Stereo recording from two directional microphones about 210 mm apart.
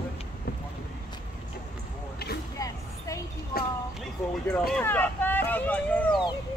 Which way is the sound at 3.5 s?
45° left (ahead or behind).